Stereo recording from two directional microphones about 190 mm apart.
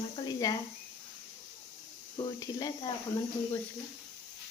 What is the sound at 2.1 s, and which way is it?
Speech, 20° left (ahead or behind).